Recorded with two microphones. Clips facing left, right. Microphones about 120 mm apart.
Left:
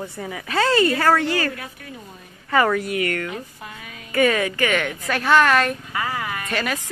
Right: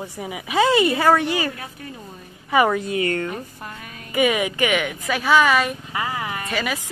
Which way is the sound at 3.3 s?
45° right (ahead or behind).